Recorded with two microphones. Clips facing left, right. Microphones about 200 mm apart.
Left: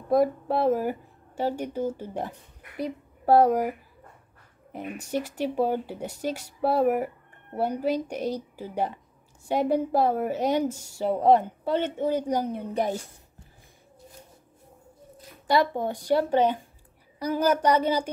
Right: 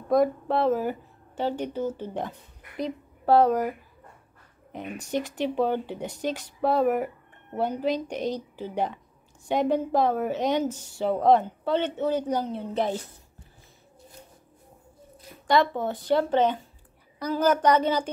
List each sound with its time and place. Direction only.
0.1 s a woman's voice: 10° left (ahead or behind)
4.7 s a woman's voice: 5° left (ahead or behind)
15.4 s a woman's voice: 10° left (ahead or behind)